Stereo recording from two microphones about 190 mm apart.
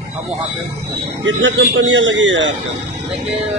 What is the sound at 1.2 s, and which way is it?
A man's voice, 75° right (ahead or behind).